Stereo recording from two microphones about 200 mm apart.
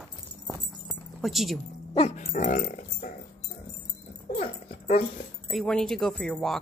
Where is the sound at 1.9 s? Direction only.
35° left (ahead or behind).